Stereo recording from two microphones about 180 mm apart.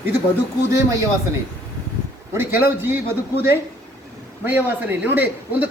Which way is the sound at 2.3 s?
10° right (ahead or behind).